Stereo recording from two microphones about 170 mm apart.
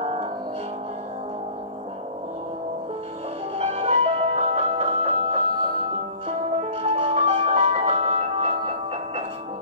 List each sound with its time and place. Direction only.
0.0 s music: 35° right (ahead or behind)
3.5 s music: 35° right (ahead or behind)